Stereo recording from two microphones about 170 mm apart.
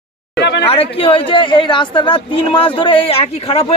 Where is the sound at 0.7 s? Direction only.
35° left (ahead or behind).